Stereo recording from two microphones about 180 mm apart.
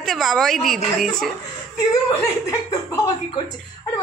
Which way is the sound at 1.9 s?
15° left (ahead or behind).